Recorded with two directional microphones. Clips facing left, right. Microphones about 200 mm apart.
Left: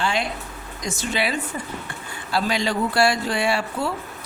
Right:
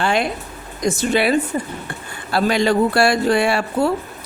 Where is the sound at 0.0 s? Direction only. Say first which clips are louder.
Right 5 dB; 55° right (ahead or behind).